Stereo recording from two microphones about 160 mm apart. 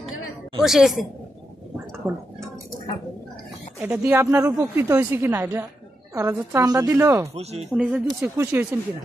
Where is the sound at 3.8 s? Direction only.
15° right (ahead or behind).